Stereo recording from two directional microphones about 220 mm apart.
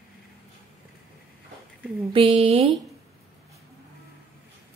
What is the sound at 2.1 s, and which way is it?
Speech, 25° right (ahead or behind).